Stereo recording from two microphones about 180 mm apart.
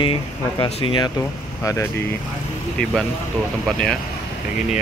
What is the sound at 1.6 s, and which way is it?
Speech, 15° left (ahead or behind).